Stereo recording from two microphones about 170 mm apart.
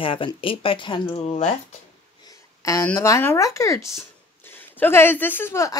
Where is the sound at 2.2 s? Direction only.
20° left (ahead or behind).